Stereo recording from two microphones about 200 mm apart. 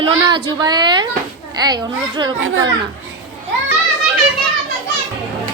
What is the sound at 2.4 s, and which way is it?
Speech, 80° right.